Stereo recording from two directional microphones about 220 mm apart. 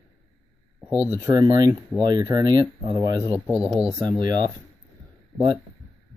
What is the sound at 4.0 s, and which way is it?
Speech, 20° right (ahead or behind).